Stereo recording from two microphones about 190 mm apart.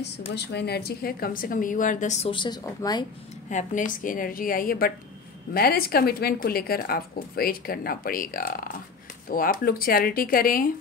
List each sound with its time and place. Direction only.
0.3 s a woman's voice: 65° left (ahead or behind); by 3.1 s 20° left (ahead or behind)
3.4 s a woman's voice: 40° left (ahead or behind)